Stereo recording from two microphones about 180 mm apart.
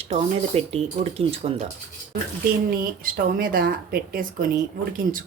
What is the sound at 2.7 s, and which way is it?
A woman's voice, 50° right (ahead or behind).